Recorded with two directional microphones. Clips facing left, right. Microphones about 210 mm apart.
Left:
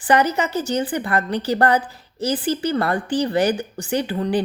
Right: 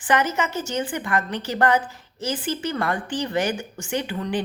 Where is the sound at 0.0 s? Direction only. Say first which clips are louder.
Left 4 dB; 35° left (ahead or behind).